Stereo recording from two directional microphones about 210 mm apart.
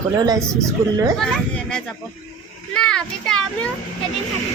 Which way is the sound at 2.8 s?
5° left (ahead or behind).